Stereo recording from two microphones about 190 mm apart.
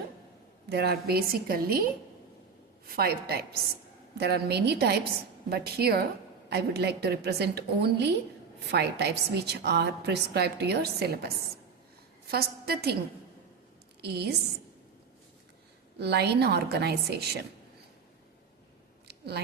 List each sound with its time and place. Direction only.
0.7 s a woman's voice: 60° right (ahead or behind)
12.3 s a woman's voice: 55° right (ahead or behind)
14.0 s a woman's voice: 60° right (ahead or behind)
16.0 s a woman's voice: 60° right (ahead or behind)
19.0 s a sound: 60° right (ahead or behind)